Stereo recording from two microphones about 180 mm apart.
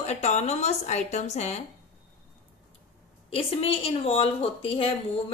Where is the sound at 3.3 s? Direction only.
35° left (ahead or behind).